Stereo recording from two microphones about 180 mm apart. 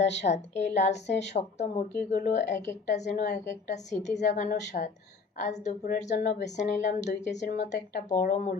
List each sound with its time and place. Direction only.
0.2 s a woman's voice: 40° left (ahead or behind)
2.0 s speech: 60° left (ahead or behind)
2.3 s a woman's voice: 40° left (ahead or behind)